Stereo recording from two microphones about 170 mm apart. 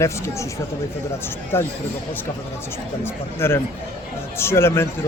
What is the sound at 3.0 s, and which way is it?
A man's voice, 15° left (ahead or behind).